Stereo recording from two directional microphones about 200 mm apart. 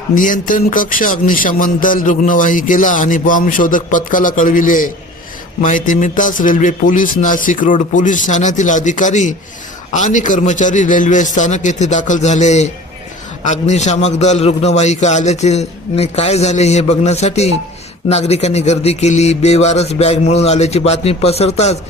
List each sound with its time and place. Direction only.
0.1 s speech: 40° left (ahead or behind)